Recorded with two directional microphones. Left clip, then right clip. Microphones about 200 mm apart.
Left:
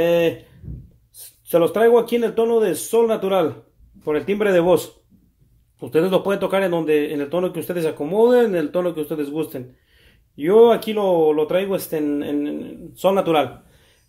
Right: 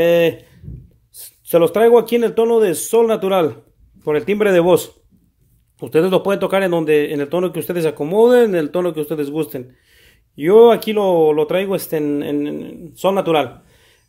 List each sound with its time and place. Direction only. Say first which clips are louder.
0.0 s speech: right 4 dB; 40° right (ahead or behind)
13.0 s a man's voice: right 1 dB; 25° right (ahead or behind)